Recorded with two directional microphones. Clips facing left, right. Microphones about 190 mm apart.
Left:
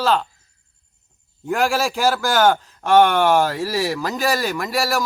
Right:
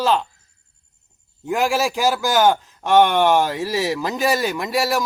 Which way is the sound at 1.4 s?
15° right (ahead or behind).